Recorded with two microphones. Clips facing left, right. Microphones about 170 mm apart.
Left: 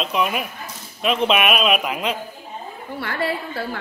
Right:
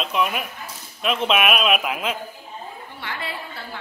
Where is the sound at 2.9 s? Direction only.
50° left (ahead or behind).